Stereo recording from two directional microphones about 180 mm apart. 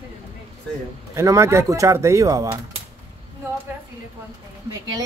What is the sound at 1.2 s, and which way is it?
Speech, 15° right (ahead or behind).